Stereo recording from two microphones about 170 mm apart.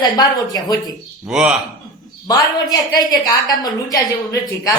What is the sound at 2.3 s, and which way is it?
A woman's voice, 25° left (ahead or behind).